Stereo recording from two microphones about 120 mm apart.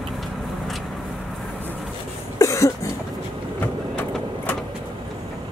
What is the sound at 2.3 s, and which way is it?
Cough, 25° left (ahead or behind).